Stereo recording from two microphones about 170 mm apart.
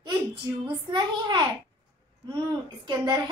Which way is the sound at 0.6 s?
25° right (ahead or behind).